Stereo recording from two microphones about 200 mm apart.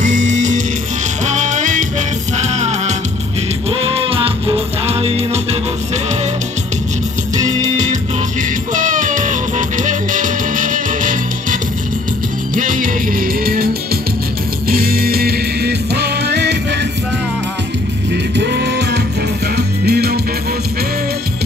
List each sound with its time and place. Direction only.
0.0 s music: 35° right (ahead or behind)
7.3 s music: 20° right (ahead or behind)
7.7 s music: 35° right (ahead or behind)
12.5 s music: 40° right (ahead or behind)
14.7 s music: 45° right (ahead or behind)
18.1 s music: 60° right (ahead or behind)